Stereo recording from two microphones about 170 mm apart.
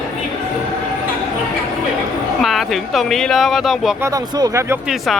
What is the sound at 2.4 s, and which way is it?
Speech, centre (ahead or behind).